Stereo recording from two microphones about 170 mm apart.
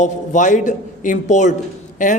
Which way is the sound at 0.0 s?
50° left (ahead or behind).